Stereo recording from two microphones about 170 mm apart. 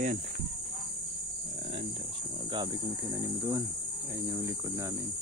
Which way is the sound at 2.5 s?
25° right (ahead or behind).